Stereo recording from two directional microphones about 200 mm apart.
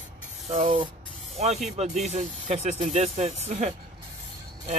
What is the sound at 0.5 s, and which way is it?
Speech, 30° right (ahead or behind).